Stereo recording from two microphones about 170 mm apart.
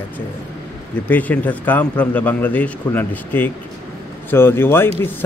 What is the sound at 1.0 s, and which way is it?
A man's voice, 10° left (ahead or behind).